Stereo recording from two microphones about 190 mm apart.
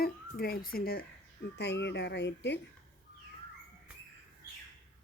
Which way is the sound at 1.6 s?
65° left (ahead or behind).